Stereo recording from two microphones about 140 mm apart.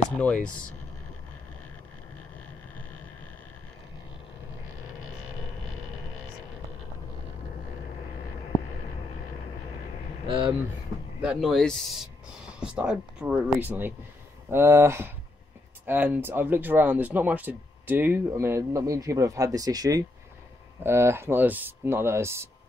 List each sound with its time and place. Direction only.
0.1 s speech: 10° left (ahead or behind)
11.1 s a man's voice: 5° right (ahead or behind)